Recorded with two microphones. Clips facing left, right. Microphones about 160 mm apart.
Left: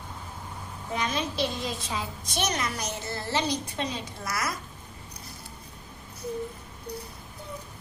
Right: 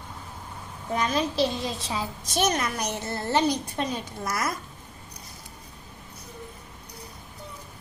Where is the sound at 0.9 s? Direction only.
40° right (ahead or behind).